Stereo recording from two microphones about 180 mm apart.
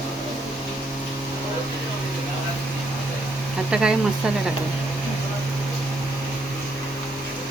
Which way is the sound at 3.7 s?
5° right (ahead or behind).